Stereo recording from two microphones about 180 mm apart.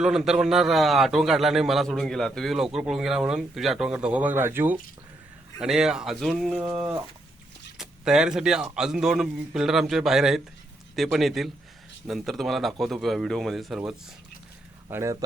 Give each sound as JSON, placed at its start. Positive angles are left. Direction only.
{"t": 0.0, "sound": "a man's voice", "side_deg": 0}
{"t": 14.8, "sound": "speech", "side_deg": -15}